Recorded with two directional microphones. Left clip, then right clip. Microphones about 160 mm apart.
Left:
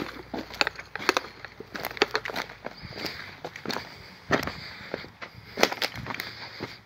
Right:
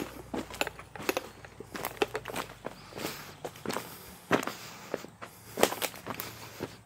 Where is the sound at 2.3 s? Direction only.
60° left (ahead or behind).